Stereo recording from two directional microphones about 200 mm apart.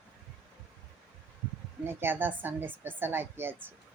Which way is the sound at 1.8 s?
10° right (ahead or behind).